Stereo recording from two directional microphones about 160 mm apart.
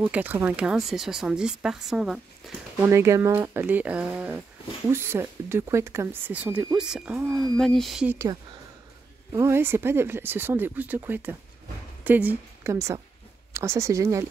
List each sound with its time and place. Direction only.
0.0 s speech: 10° right (ahead or behind)
2.8 s speech: 15° right (ahead or behind)
9.3 s speech: 15° right (ahead or behind)